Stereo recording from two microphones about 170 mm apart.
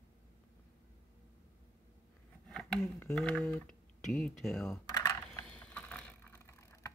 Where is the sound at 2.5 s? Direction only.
5° left (ahead or behind).